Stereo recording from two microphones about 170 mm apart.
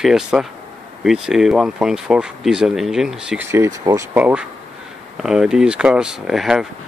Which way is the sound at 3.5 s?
15° right (ahead or behind).